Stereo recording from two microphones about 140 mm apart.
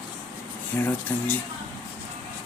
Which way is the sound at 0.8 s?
10° left (ahead or behind).